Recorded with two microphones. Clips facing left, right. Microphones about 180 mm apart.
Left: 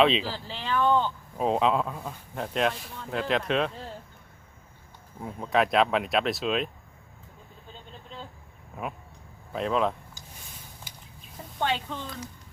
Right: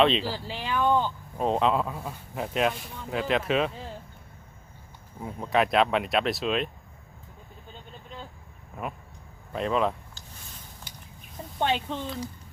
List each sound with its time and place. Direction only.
0.0 s speech: centre (ahead or behind)
0.3 s a sound: 10° right (ahead or behind)
1.4 s speech: centre (ahead or behind)
5.2 s speech: centre (ahead or behind)
8.7 s speech: centre (ahead or behind)
11.6 s speech: 20° right (ahead or behind)